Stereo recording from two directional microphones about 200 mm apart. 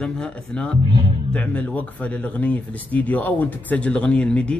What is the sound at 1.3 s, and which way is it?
A man's voice, 5° left (ahead or behind).